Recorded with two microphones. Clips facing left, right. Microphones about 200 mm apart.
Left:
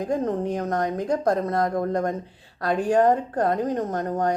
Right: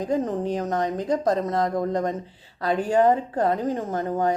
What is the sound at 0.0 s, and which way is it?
Speech, centre (ahead or behind).